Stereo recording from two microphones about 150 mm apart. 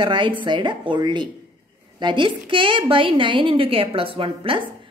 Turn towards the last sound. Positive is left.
turn(degrees=-35)  # may be behind; listen again after turning